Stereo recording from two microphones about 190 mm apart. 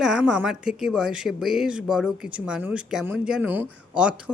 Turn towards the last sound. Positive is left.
turn(degrees=-5)  # may be behind; listen again after turning